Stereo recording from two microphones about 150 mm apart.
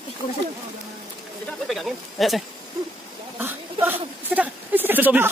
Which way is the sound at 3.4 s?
10° right (ahead or behind).